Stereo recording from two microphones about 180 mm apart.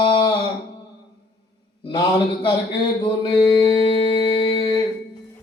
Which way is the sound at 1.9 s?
30° left (ahead or behind).